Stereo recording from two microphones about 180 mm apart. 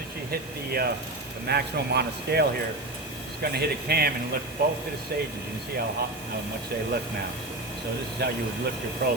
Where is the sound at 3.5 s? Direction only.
60° right (ahead or behind).